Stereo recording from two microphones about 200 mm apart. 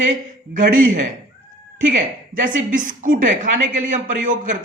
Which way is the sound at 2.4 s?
40° right (ahead or behind).